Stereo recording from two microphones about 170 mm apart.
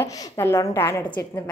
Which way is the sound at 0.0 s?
15° left (ahead or behind).